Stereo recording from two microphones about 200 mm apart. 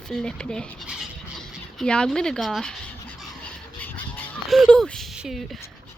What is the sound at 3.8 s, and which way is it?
Honk, 10° left (ahead or behind).